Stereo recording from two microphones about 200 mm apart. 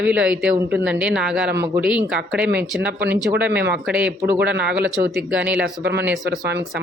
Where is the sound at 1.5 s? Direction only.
55° right (ahead or behind).